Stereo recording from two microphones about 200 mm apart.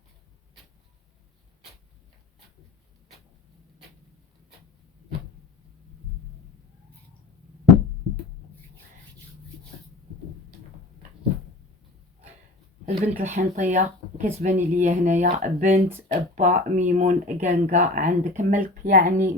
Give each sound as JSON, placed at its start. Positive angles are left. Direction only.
{"t": 12.8, "sound": "speech", "side_deg": -45}